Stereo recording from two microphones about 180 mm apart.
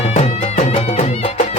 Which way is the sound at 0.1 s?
35° left (ahead or behind).